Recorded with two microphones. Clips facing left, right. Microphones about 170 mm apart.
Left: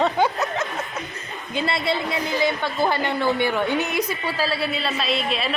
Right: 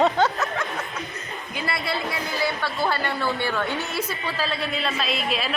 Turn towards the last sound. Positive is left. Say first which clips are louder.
# left 2 dB
turn(degrees=0)  # may be behind; listen again after turning